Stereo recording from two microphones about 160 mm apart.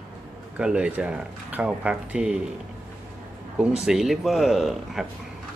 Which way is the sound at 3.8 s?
Centre (ahead or behind).